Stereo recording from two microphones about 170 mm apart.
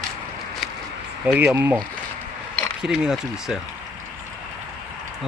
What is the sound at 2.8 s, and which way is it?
Speech, 5° right (ahead or behind).